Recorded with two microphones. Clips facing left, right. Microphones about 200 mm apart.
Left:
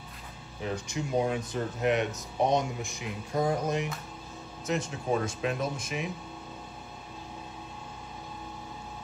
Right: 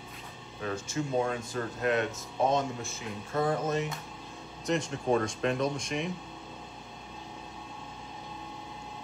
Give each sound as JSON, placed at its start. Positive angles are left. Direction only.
{"t": 0.6, "sound": "speech", "side_deg": 15}
{"t": 4.6, "sound": "speech", "side_deg": 0}